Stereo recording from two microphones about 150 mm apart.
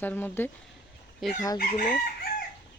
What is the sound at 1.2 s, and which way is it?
Chicken, centre (ahead or behind).